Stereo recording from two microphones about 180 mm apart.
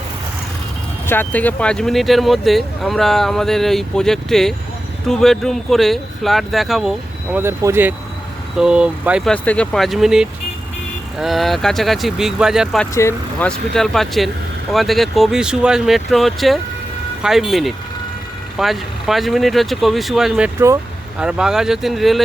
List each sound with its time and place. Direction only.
1.0 s speech: 10° left (ahead or behind)
7.3 s speech: 15° right (ahead or behind)
9.3 s speech: 5° left (ahead or behind)
12.9 s speech: 15° left (ahead or behind)
13.7 s speech: centre (ahead or behind)